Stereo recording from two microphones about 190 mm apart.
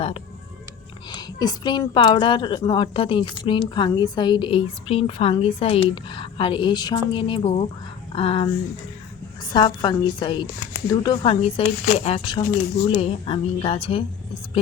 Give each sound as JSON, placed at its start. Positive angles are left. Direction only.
{"t": 1.1, "sound": "a woman's voice", "side_deg": 20}